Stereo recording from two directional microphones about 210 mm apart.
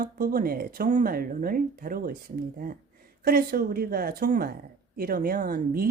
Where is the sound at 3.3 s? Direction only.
45° right (ahead or behind).